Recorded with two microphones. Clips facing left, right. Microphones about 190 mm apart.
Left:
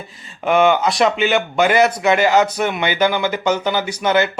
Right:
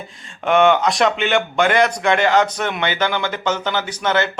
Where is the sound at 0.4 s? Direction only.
5° left (ahead or behind).